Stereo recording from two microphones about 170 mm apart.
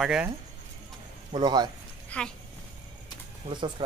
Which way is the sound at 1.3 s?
25° right (ahead or behind).